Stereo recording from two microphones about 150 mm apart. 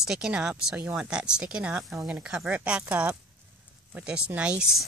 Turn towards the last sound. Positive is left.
turn(degrees=-10)  # may be behind; listen again after turning